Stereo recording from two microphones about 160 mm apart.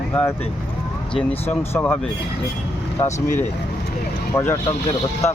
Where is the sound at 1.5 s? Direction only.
10° left (ahead or behind).